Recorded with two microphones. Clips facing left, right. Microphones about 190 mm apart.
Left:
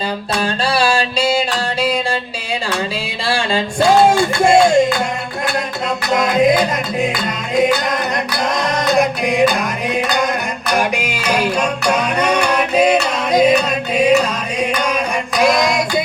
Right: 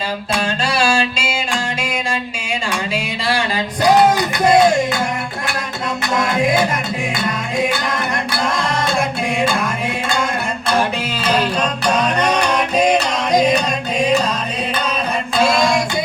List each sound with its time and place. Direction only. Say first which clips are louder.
0.7 s music: left 1 dB; 35° left (ahead or behind)
2.9 s a sound: even; 30° left (ahead or behind)
4.2 s music: left 2 dB; 25° left (ahead or behind)
6.1 s music: left 4 dB; 20° left (ahead or behind)
8.9 s music: left 4 dB; 20° left (ahead or behind)
15.4 s music: left 1 dB; 15° left (ahead or behind)